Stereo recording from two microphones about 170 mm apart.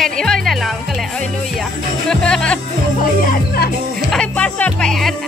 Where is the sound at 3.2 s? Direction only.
60° left (ahead or behind).